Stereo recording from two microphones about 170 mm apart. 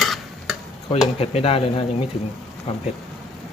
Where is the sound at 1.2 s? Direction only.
35° left (ahead or behind).